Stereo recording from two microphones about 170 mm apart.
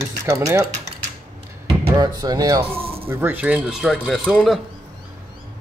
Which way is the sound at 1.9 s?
20° right (ahead or behind).